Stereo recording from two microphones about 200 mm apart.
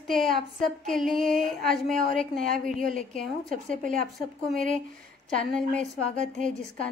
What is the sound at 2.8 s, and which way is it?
Speech, 40° right (ahead or behind).